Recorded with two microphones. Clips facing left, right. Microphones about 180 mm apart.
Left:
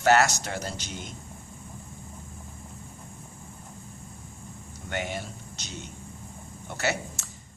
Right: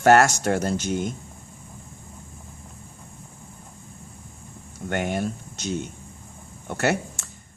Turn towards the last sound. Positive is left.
turn(degrees=-50)  # may be behind; listen again after turning